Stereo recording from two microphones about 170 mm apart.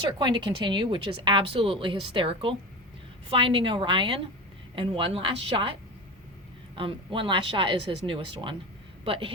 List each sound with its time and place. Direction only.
0.2 s speech: 25° right (ahead or behind)
6.7 s speech: 30° right (ahead or behind)